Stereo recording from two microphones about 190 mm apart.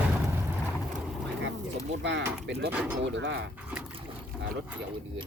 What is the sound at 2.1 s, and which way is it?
Bird, 65° right (ahead or behind).